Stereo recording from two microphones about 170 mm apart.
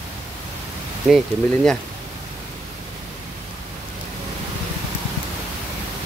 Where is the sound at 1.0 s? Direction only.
Centre (ahead or behind).